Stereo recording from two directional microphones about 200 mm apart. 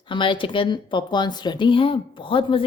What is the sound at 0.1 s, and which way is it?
Speech, 25° left (ahead or behind).